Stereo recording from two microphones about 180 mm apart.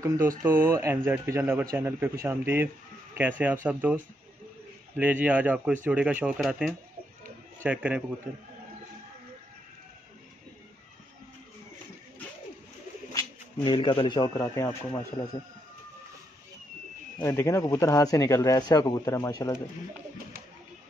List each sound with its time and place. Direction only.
0.0 s speech: 15° right (ahead or behind)
13.7 s speech: 25° left (ahead or behind)
17.2 s speech: 15° left (ahead or behind)